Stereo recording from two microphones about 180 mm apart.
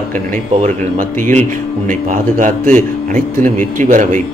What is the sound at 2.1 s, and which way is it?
A man's voice, 45° right (ahead or behind).